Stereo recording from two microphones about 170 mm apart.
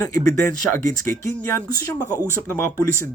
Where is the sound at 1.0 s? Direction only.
50° right (ahead or behind).